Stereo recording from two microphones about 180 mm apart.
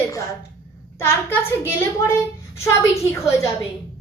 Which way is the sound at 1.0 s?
15° left (ahead or behind).